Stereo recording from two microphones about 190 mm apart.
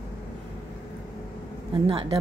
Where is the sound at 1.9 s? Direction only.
30° right (ahead or behind).